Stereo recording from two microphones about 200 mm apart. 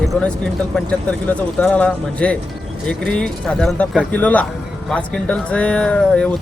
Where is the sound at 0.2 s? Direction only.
5° left (ahead or behind).